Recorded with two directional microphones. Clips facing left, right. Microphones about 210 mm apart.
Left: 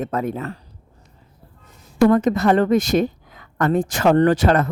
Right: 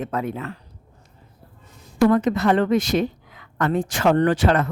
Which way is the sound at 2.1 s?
45° left (ahead or behind).